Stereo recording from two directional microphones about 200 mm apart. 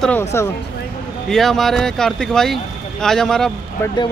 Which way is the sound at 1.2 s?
Centre (ahead or behind).